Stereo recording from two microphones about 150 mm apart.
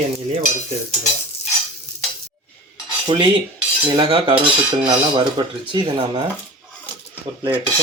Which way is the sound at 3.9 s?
35° right (ahead or behind).